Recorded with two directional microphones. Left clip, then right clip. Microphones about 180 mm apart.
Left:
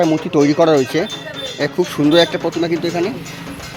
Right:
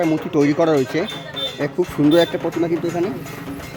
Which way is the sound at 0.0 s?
5° right (ahead or behind).